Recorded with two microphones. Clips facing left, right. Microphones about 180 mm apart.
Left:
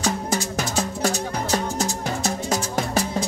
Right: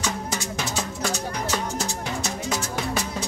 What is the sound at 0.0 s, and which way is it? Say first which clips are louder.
Music: left 5 dB; 40° left (ahead or behind).